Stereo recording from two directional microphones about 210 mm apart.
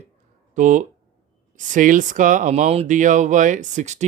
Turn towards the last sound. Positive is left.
turn(degrees=-35)  # may be behind; listen again after turning